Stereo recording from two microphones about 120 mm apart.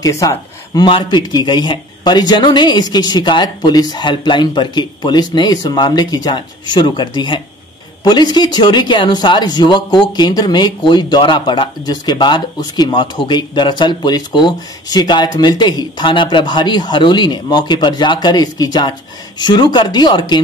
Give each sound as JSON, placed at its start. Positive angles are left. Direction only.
{"t": 0.0, "sound": "speech", "side_deg": 25}
{"t": 0.8, "sound": "speech", "side_deg": 40}